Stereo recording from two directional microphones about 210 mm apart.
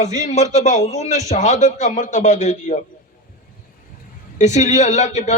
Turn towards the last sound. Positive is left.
turn(degrees=30)  # may be behind; listen again after turning